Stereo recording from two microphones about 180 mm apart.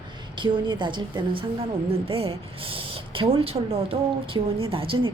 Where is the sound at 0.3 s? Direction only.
25° right (ahead or behind).